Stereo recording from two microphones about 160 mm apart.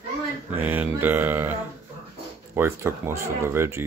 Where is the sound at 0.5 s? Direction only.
10° right (ahead or behind).